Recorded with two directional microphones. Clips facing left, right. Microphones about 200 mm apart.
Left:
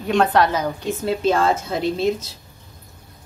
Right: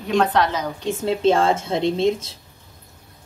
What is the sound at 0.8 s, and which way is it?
Speech, 25° right (ahead or behind).